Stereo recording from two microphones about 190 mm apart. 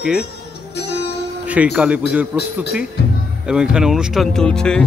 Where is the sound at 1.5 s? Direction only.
5° right (ahead or behind).